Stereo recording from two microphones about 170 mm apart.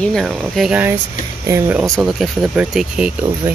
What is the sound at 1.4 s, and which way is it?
Speech, 15° right (ahead or behind).